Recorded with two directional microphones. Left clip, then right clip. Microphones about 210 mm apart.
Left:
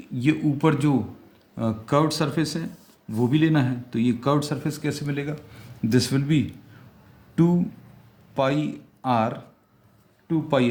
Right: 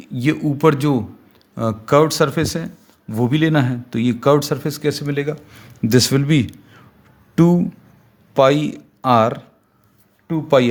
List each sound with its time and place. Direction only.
0.0 s speech: 45° right (ahead or behind)